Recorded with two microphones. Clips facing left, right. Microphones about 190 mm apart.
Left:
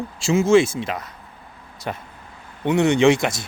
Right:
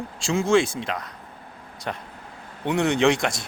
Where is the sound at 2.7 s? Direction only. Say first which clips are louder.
Left 4 dB; centre (ahead or behind).